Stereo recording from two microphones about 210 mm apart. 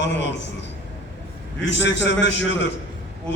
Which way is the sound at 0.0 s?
55° left (ahead or behind).